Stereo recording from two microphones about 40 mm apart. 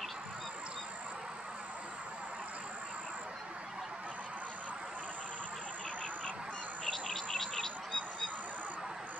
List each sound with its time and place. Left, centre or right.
6.9 s bird: centre